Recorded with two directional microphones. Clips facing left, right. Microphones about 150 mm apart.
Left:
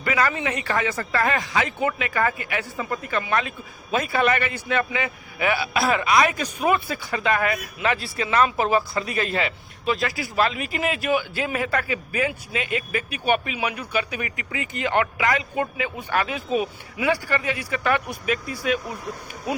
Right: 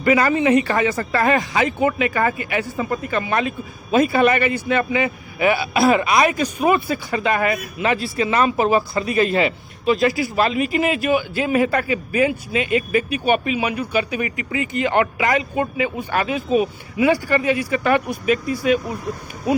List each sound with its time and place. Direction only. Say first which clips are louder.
0.0 s a man's voice: right 7 dB; 15° right (ahead or behind)
3.2 s a man's voice: right 2 dB; 10° right (ahead or behind)